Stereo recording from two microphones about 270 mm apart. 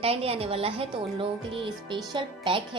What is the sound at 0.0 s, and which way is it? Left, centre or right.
Speech, right.